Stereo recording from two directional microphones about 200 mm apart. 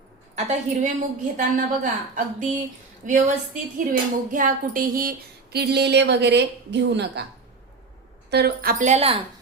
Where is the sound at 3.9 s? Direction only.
45° right (ahead or behind); by 7.2 s 60° right (ahead or behind).